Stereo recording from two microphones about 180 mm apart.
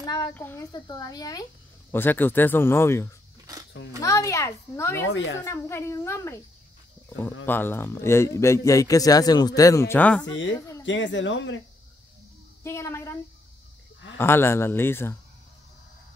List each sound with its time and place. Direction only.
0.0 s a sound: 20° left (ahead or behind)
0.3 s speech: 10° left (ahead or behind)
0.7 s speech: 25° left (ahead or behind)
5.1 s speech: 90° left
5.4 s speech: 15° left (ahead or behind)
7.4 s speech: 10° left (ahead or behind)
10.9 s speech: 90° left
12.6 s speech: 15° left (ahead or behind)